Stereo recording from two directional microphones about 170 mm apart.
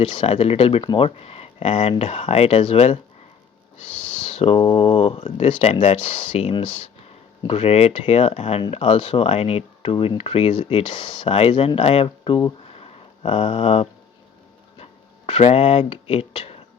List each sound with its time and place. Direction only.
0.0 s speech: 35° left (ahead or behind)
4.3 s speech: 35° left (ahead or behind)
12.7 s a sound: 35° left (ahead or behind)
15.3 s speech: 35° left (ahead or behind)